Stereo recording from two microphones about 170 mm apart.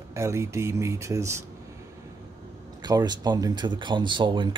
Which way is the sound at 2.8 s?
25° right (ahead or behind).